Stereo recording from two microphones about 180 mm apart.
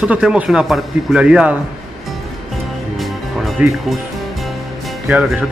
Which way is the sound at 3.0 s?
Centre (ahead or behind).